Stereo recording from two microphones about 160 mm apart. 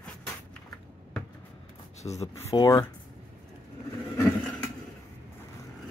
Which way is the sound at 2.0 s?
45° left (ahead or behind).